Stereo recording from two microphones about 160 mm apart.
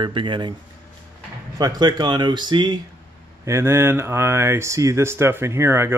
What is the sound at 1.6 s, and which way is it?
Speech, 25° right (ahead or behind).